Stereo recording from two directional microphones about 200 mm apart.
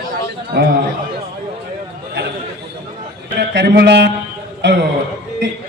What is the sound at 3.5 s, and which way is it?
A man's voice, 60° right (ahead or behind).